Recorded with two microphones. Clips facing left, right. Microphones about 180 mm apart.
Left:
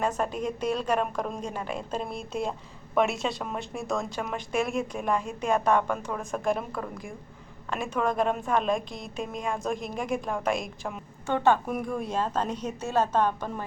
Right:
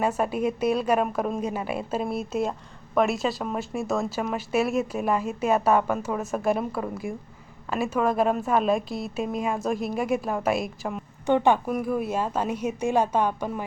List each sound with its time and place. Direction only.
0.0 s a woman's voice: 10° right (ahead or behind)
11.3 s a woman's voice: 15° right (ahead or behind)
11.7 s a woman's voice: 5° right (ahead or behind)